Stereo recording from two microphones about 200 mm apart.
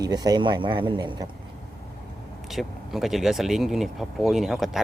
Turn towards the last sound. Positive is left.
turn(degrees=0)  # may be behind; listen again after turning